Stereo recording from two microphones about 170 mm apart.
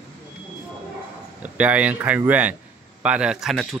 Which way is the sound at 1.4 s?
10° right (ahead or behind).